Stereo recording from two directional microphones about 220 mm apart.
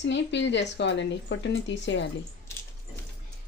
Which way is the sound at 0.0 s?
55° left (ahead or behind).